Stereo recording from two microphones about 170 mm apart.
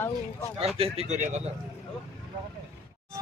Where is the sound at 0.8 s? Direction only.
40° right (ahead or behind).